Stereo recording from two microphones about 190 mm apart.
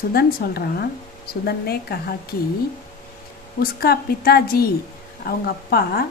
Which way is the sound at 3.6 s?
55° left (ahead or behind).